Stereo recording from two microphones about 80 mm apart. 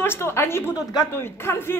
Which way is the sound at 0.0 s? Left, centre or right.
Left.